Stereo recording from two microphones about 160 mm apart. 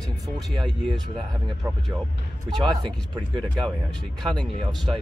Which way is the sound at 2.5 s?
25° right (ahead or behind).